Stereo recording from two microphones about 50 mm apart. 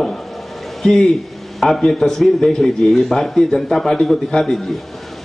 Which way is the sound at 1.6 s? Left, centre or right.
Centre.